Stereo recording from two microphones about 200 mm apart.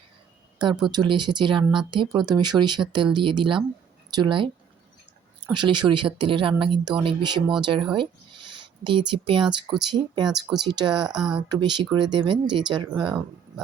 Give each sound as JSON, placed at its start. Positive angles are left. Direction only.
{"t": 0.6, "sound": "speech", "side_deg": -20}
{"t": 5.5, "sound": "speech", "side_deg": -25}